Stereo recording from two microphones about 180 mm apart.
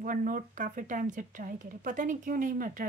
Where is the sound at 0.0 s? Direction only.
50° right (ahead or behind).